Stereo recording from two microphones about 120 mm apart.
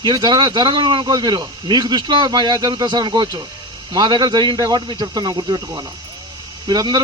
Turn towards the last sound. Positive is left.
turn(degrees=-35)  # may be behind; listen again after turning